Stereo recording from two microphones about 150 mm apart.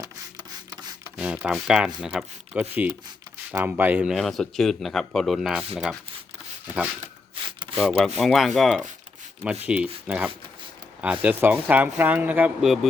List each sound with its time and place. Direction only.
1.0 s speech: 10° right (ahead or behind)
7.4 s a sound: 35° right (ahead or behind)
7.8 s speech: centre (ahead or behind)